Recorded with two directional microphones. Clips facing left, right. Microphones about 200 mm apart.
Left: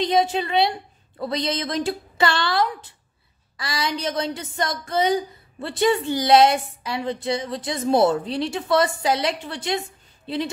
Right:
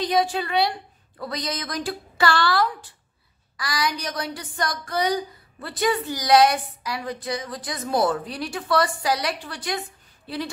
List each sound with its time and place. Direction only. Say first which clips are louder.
0.0 s a woman's voice: left 2 dB; 25° left (ahead or behind)